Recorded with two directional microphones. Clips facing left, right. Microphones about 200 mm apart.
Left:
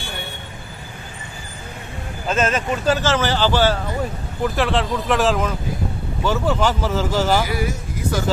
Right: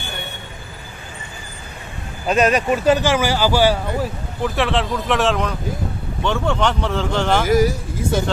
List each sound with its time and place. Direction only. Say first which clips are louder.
2.2 s speech: right 4 dB; 15° right (ahead or behind)
4.4 s speech: even; centre (ahead or behind)
7.4 s speech: right 8 dB; 40° right (ahead or behind)